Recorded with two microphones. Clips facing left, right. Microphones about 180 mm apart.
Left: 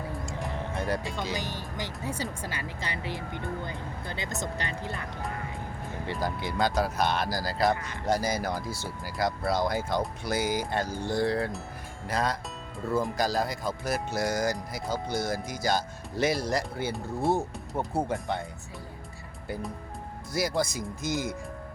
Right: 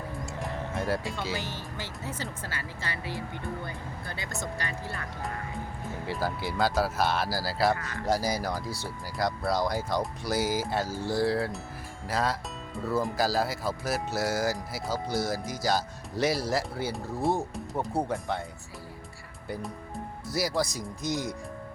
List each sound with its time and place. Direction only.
0.3 s music: centre (ahead or behind)
1.3 s speech: 15° left (ahead or behind)
6.1 s speech: 5° right (ahead or behind)
7.7 s speech: 20° left (ahead or behind)
8.0 s speech: centre (ahead or behind)
20.3 s speech: centre (ahead or behind)